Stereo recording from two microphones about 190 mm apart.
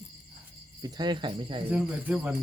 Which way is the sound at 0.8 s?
20° right (ahead or behind).